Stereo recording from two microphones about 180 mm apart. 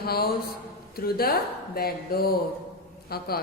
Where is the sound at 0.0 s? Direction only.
60° left (ahead or behind).